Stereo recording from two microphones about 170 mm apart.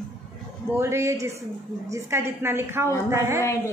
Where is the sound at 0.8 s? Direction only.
15° right (ahead or behind).